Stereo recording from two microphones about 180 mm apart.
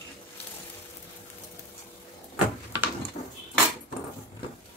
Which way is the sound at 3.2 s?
40° left (ahead or behind).